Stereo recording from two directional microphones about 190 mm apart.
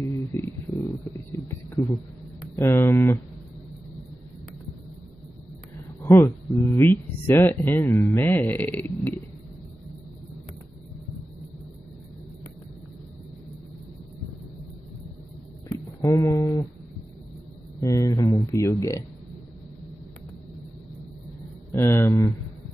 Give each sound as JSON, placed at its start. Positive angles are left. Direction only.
{"t": 0.0, "sound": "a sound", "side_deg": 15}
{"t": 2.5, "sound": "speech", "side_deg": 15}
{"t": 6.0, "sound": "speech", "side_deg": 15}
{"t": 16.0, "sound": "speech", "side_deg": 15}
{"t": 17.7, "sound": "speech", "side_deg": 15}
{"t": 21.7, "sound": "speech", "side_deg": 15}